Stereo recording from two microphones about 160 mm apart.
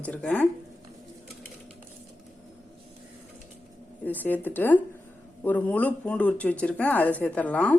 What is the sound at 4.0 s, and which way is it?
A woman's voice, 10° left (ahead or behind).